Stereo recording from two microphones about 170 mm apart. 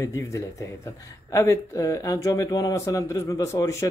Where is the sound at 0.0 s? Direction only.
20° left (ahead or behind).